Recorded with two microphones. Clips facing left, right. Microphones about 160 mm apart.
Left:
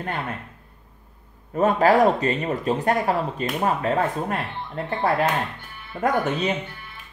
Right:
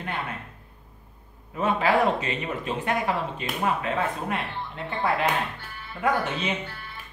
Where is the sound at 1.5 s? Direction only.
40° left (ahead or behind).